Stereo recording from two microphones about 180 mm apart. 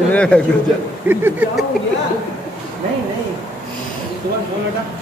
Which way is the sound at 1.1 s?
10° right (ahead or behind).